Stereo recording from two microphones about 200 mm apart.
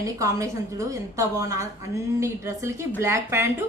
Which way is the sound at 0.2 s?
15° right (ahead or behind).